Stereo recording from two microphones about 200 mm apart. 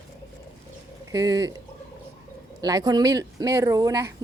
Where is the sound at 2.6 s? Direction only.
20° right (ahead or behind).